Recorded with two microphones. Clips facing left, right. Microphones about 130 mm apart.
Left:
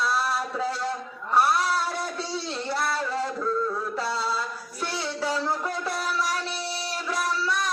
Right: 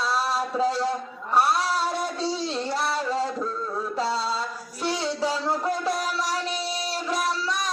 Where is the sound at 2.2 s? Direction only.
20° right (ahead or behind).